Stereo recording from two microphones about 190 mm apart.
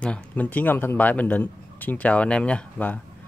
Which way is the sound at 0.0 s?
5° left (ahead or behind).